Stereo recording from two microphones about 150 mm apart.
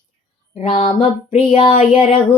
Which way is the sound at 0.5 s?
35° left (ahead or behind).